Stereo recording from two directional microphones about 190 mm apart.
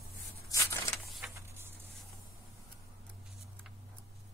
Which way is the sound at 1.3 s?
15° right (ahead or behind).